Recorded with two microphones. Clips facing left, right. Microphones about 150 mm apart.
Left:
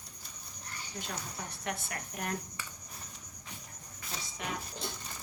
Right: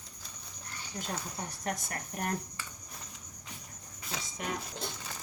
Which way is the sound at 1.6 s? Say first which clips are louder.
Right 2 dB; 40° right (ahead or behind).